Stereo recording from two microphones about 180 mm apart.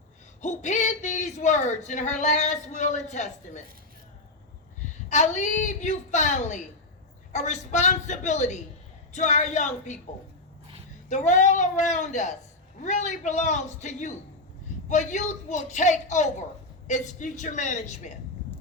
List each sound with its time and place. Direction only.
0.4 s speech: 40° left (ahead or behind)
5.0 s speech: 40° left (ahead or behind)
11.1 s speech: 40° left (ahead or behind)